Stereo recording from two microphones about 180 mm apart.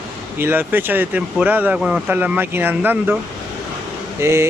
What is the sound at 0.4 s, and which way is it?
Speech, 10° right (ahead or behind).